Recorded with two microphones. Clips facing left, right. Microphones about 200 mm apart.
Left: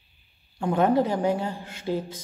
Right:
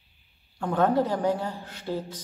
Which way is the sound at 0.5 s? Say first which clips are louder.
Left 2 dB; 10° left (ahead or behind).